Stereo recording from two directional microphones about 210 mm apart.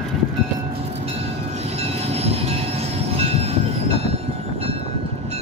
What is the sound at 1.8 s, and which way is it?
Train, 30° right (ahead or behind).